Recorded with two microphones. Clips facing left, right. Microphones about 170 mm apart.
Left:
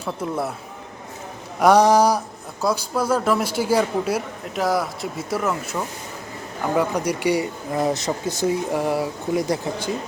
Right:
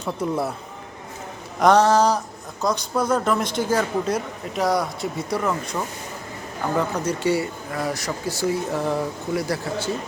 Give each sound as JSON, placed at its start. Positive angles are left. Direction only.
{"t": 0.0, "sound": "speech", "side_deg": 5}
{"t": 1.5, "sound": "speech", "side_deg": 10}